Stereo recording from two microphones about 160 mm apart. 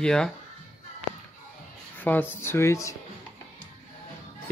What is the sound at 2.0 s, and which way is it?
Speech, 10° left (ahead or behind).